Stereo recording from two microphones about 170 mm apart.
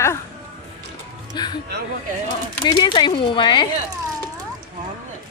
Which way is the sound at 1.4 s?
25° left (ahead or behind).